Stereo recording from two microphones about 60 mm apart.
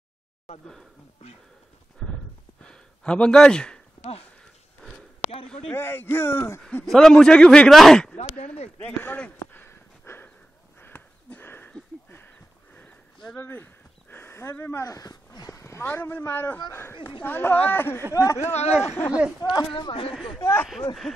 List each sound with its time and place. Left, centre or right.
2.0 s clip-clop: centre
2.6 s a sound: centre
5.8 s speech: left
6.9 s a man's voice: centre
7.7 s speech: centre
8.0 s speech: left
9.7 s a sound: left
13.4 s a sound: left
14.9 s a sound: left
15.8 s speech: left
18.1 s speech: left
18.8 s speech: left
19.1 s speech: centre
20.6 s speech: centre